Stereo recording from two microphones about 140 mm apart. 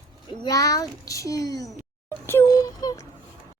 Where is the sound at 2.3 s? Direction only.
20° left (ahead or behind).